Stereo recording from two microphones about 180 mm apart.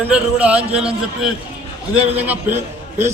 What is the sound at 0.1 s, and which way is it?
A man's voice, 5° right (ahead or behind).